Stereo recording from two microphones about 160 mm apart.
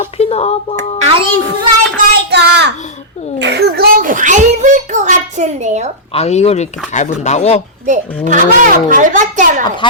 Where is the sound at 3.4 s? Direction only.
90° right; by 5.9 s 45° right (ahead or behind).